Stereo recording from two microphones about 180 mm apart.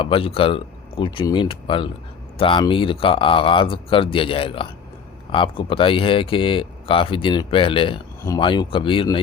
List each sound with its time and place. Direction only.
0.0 s speech: 30° left (ahead or behind)